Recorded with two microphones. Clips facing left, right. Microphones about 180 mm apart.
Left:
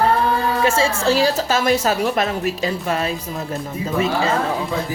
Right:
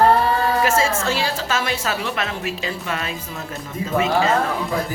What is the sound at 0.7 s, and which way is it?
A woman's voice, 30° left (ahead or behind).